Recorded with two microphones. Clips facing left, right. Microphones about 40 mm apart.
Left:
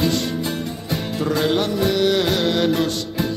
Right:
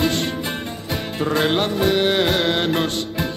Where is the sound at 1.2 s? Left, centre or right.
Right.